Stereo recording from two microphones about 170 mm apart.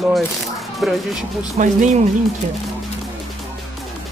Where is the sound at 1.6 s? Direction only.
45° right (ahead or behind).